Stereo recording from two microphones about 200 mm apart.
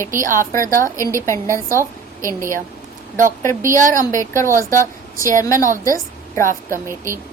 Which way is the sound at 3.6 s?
40° right (ahead or behind).